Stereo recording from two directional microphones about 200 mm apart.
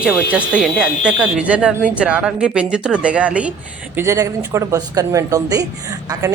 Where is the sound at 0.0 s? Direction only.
5° right (ahead or behind).